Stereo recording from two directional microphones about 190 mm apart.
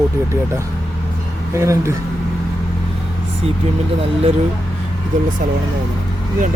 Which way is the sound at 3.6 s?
35° right (ahead or behind).